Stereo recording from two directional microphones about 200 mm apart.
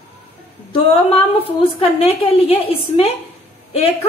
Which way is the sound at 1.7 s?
30° left (ahead or behind).